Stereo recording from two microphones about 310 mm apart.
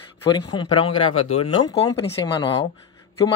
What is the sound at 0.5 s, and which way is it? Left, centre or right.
Speech, centre.